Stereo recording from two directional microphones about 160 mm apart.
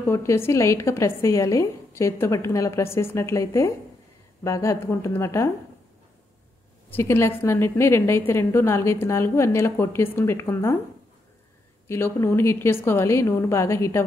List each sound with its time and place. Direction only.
0.0 s a woman's voice: 15° left (ahead or behind)
6.9 s a woman's voice: 15° left (ahead or behind)
11.9 s a woman's voice: 15° left (ahead or behind)